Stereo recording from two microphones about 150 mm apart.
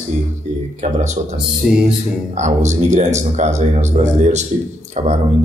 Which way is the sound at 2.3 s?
50° right (ahead or behind).